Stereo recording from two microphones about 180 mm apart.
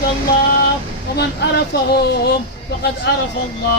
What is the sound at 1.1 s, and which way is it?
Speech, 65° left (ahead or behind).